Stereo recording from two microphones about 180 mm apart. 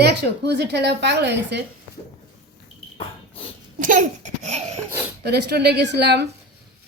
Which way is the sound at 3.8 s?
50° right (ahead or behind).